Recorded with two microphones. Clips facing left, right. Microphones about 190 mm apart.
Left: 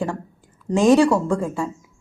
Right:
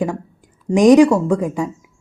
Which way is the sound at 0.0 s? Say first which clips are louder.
Right 4 dB; 15° right (ahead or behind).